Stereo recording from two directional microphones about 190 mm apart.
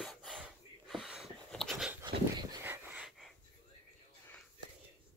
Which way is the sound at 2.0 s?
25° right (ahead or behind).